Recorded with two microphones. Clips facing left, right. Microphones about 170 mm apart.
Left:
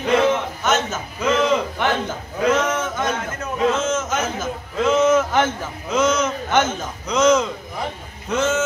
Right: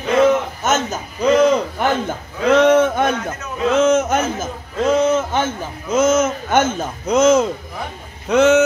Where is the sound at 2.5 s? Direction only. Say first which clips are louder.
Right 14 dB; 65° right (ahead or behind).